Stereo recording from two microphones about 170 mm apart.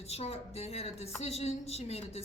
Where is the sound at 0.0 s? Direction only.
40° left (ahead or behind).